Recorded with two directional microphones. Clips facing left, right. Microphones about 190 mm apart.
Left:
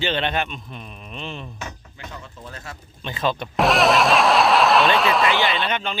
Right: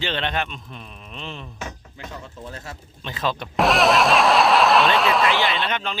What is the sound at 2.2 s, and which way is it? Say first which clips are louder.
Speech: right 2 dB; 35° right (ahead or behind).